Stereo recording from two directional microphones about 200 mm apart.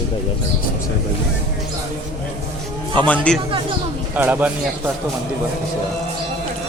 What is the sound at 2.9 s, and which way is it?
Speech, 5° left (ahead or behind).